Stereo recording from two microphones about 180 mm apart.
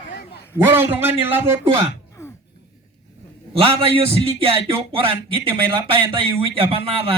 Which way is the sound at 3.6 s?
30° right (ahead or behind).